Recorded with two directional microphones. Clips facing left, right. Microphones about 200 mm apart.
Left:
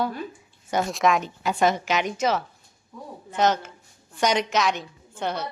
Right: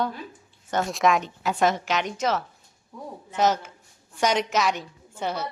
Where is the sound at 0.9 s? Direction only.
Centre (ahead or behind).